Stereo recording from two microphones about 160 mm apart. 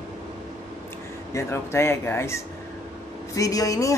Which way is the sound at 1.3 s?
15° left (ahead or behind).